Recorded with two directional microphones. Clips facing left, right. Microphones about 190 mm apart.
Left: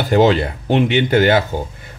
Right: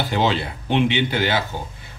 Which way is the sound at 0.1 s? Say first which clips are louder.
Left 11 dB; 45° left (ahead or behind).